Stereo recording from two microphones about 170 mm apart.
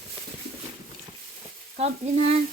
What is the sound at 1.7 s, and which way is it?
Speech, 40° right (ahead or behind).